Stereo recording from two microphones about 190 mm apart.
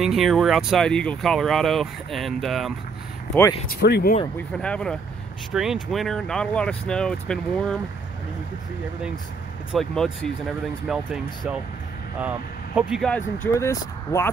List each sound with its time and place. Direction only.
0.0 s speech: centre (ahead or behind)
3.8 s speech: 60° left (ahead or behind)
4.4 s speech: 5° left (ahead or behind)
9.7 s speech: centre (ahead or behind)
12.7 s speech: centre (ahead or behind)